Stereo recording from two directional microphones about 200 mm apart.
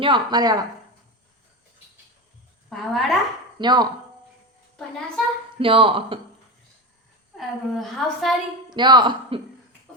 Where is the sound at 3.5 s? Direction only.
20° right (ahead or behind).